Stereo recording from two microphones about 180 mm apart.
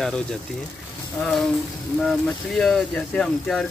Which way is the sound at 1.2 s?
10° left (ahead or behind).